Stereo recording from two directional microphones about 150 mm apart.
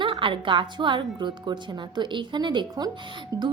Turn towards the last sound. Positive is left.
turn(degrees=-25)  # may be behind; listen again after turning